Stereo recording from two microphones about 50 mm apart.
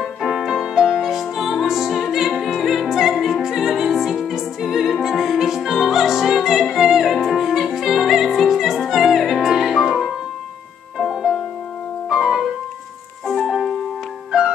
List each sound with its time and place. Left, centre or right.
0.0 s music: centre
11.0 s music: centre
12.1 s keyboard: centre
13.3 s music: centre
14.3 s music: centre